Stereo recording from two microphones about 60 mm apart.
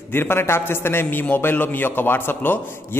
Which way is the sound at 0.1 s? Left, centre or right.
Left.